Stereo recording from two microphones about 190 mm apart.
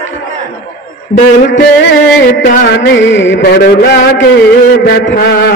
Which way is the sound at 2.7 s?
60° left (ahead or behind).